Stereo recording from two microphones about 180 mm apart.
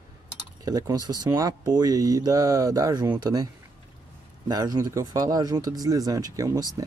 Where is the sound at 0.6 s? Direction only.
20° right (ahead or behind).